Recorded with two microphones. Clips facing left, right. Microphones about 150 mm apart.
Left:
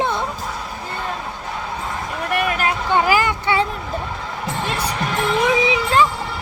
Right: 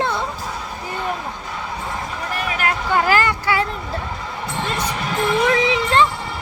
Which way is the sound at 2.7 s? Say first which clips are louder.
Right 1 dB; 20° left (ahead or behind).